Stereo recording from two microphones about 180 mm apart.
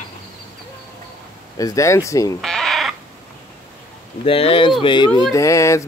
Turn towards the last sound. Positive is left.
turn(degrees=15)  # may be behind; listen again after turning